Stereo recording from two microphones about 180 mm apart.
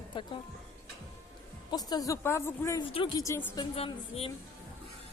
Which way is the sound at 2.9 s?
30° left (ahead or behind).